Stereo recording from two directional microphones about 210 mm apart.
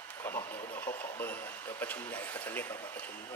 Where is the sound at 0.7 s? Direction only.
10° left (ahead or behind).